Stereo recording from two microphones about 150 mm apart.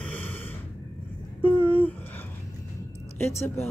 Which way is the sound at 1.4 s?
10° left (ahead or behind).